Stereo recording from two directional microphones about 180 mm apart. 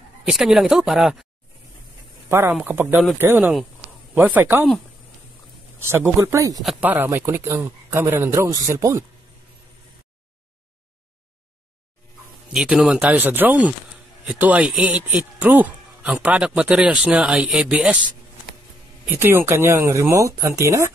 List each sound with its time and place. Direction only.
0.2 s speech: centre (ahead or behind)
2.2 s speech: 10° right (ahead or behind)
5.8 s speech: 15° right (ahead or behind)
6.6 s speech: 5° right (ahead or behind)
12.5 s speech: 5° right (ahead or behind)
19.0 s speech: 15° right (ahead or behind)